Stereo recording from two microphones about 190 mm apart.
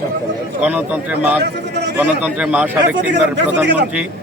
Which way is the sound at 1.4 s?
65° right (ahead or behind).